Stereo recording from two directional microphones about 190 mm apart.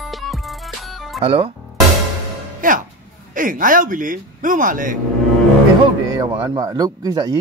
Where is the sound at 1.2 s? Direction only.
30° right (ahead or behind).